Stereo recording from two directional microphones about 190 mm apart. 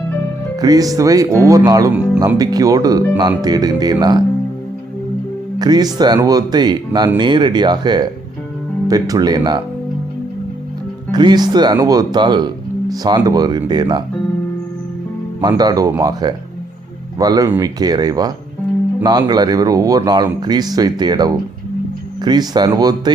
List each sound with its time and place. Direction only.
0.6 s speech: 20° right (ahead or behind)
5.5 s speech: 20° right (ahead or behind)
11.1 s speech: 20° right (ahead or behind)
15.4 s speech: 20° right (ahead or behind)